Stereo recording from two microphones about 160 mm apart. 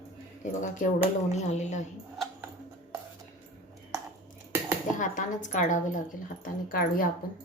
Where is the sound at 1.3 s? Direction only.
45° left (ahead or behind).